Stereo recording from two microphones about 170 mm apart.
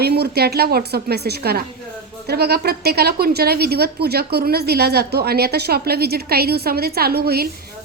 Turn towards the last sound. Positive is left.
turn(degrees=-65)  # may be behind; listen again after turning